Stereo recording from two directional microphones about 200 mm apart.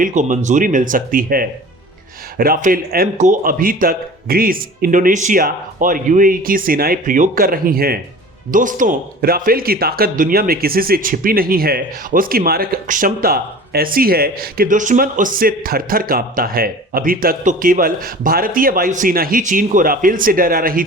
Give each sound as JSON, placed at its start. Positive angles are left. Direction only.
{"t": 0.0, "sound": "speech", "side_deg": -40}